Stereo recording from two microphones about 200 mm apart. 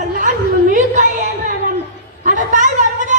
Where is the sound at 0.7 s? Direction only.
40° right (ahead or behind).